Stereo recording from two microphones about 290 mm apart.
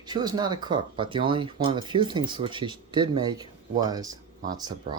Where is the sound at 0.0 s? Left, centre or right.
Centre.